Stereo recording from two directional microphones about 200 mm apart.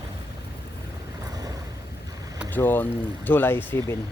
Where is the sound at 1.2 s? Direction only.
20° right (ahead or behind).